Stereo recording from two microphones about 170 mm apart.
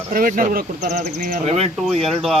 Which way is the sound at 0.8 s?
45° right (ahead or behind).